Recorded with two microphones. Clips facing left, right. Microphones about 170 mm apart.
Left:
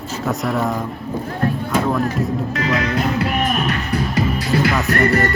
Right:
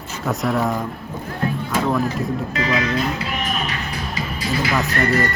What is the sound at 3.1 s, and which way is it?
Music, 60° left (ahead or behind).